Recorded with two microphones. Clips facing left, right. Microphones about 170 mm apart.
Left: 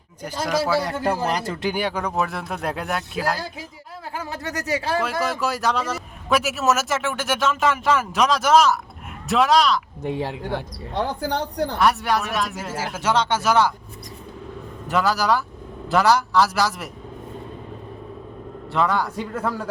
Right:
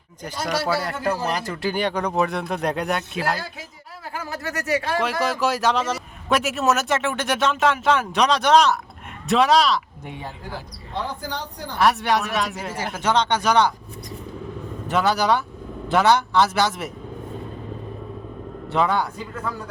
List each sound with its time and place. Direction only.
0.8 s a man's voice: 20° left (ahead or behind)
1.8 s a man's voice: 5° left (ahead or behind)
4.1 s a man's voice: 25° left (ahead or behind)
5.2 s a man's voice: centre (ahead or behind)
10.2 s speech: 75° left (ahead or behind)
11.8 s a man's voice: centre (ahead or behind)
14.8 s a man's voice: centre (ahead or behind)
18.7 s a man's voice: centre (ahead or behind)